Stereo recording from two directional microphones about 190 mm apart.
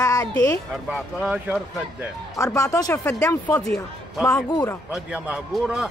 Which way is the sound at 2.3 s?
15° left (ahead or behind).